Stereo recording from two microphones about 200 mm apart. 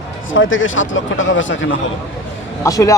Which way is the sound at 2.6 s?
15° left (ahead or behind).